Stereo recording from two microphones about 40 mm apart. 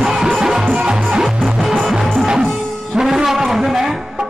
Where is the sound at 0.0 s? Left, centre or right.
Centre.